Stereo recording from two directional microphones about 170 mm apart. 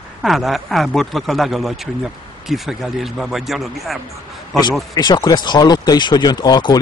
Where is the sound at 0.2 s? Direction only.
Centre (ahead or behind).